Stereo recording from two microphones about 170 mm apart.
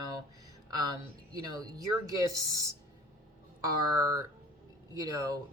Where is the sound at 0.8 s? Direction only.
20° right (ahead or behind).